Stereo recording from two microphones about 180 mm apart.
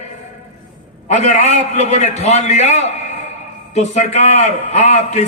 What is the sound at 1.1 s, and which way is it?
A man's voice, 40° left (ahead or behind).